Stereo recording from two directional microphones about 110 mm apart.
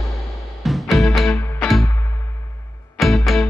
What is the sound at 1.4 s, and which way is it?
Music, 20° left (ahead or behind).